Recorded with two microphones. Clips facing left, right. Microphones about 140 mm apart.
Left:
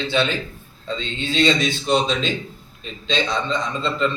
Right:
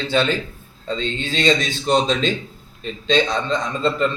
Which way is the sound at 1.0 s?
45° right (ahead or behind).